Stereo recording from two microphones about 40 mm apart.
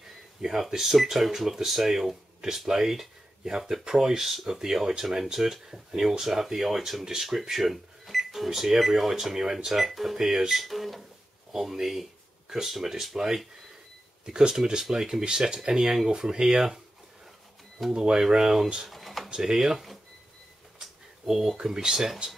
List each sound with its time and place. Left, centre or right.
0.4 s speech: centre
9.8 s speech: centre
11.5 s a sound: centre
12.6 s speech: centre
17.9 s speech: centre
18.9 s a sound: centre
19.3 s speech: centre
20.8 s a sound: centre
21.5 s speech: centre